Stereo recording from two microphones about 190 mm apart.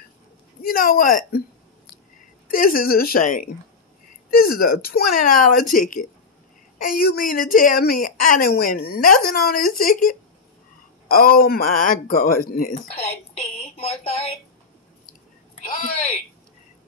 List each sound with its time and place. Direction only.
0.6 s a woman's voice: 50° left (ahead or behind)
2.5 s a woman's voice: 45° left (ahead or behind)
12.9 s speech: 35° left (ahead or behind)
15.6 s a sound: 35° left (ahead or behind)